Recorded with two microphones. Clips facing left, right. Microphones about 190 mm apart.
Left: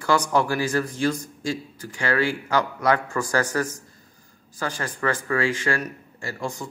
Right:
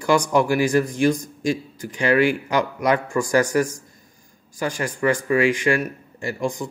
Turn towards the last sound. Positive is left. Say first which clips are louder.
# right 6 dB
turn(degrees=-15)  # may be behind; listen again after turning